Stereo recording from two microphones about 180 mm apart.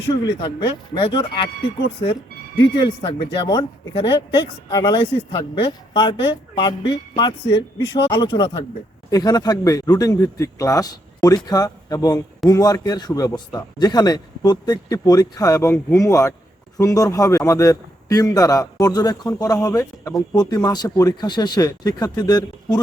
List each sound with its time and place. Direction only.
0.1 s a man's voice: 25° left (ahead or behind)